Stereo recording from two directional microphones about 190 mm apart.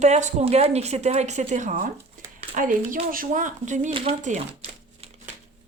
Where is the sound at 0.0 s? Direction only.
40° right (ahead or behind).